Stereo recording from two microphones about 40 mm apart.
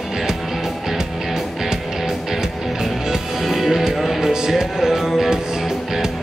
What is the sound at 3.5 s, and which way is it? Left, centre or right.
Music, centre.